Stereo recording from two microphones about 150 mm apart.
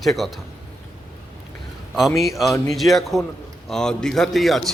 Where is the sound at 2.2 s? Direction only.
Centre (ahead or behind).